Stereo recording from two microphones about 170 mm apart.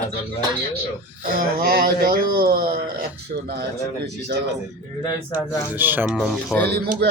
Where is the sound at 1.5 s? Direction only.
60° right (ahead or behind).